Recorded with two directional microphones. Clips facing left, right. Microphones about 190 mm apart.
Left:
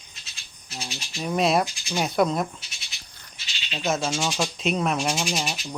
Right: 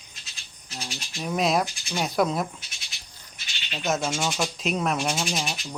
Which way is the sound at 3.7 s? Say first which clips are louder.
Left 1 dB; centre (ahead or behind).